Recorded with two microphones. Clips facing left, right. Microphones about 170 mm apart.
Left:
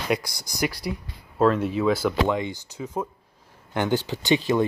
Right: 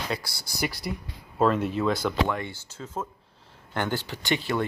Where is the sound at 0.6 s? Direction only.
Centre (ahead or behind).